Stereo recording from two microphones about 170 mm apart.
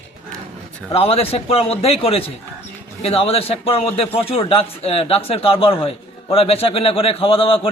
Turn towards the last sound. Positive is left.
turn(degrees=35)  # may be behind; listen again after turning